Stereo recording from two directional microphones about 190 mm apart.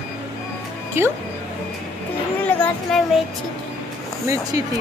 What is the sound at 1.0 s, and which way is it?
Speech, 10° right (ahead or behind).